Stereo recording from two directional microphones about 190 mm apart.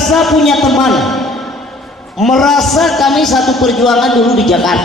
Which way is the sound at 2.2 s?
Centre (ahead or behind).